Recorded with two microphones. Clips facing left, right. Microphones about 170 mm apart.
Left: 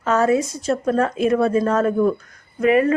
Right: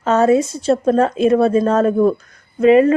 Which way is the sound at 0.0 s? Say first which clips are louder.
Right 4 dB; 25° right (ahead or behind).